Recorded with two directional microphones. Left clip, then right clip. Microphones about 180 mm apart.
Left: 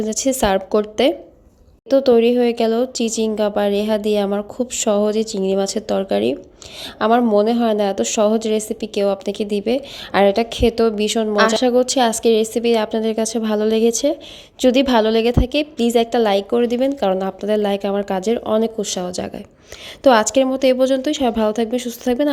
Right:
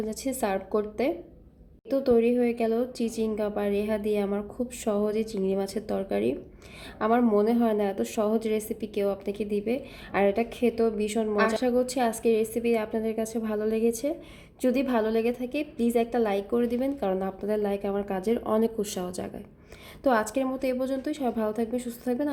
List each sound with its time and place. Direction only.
0.0 s a woman's voice: 25° left (ahead or behind)